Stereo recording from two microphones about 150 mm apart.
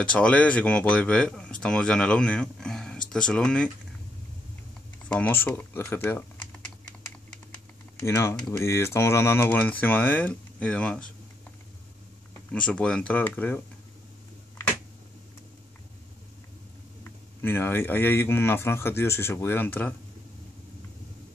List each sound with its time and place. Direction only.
0.0 s speech: 10° left (ahead or behind)
5.0 s speech: 10° left (ahead or behind)
8.0 s speech: 20° left (ahead or behind)
12.4 s speech: 5° left (ahead or behind)
17.0 s speech: 15° left (ahead or behind)